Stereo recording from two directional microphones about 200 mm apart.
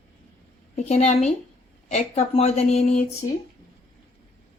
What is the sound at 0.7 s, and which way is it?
Speech, 35° left (ahead or behind).